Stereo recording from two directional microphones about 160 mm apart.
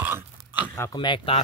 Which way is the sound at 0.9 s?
30° left (ahead or behind).